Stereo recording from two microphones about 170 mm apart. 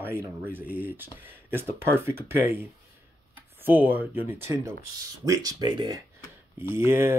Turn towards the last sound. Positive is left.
turn(degrees=-15)  # may be behind; listen again after turning